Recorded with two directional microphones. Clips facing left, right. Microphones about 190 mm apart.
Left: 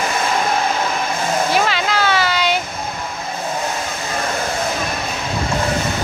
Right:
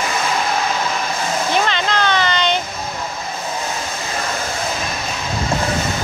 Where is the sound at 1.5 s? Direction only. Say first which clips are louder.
Left 1 dB; 5° left (ahead or behind).